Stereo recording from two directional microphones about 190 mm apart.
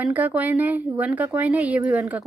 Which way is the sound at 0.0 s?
10° right (ahead or behind).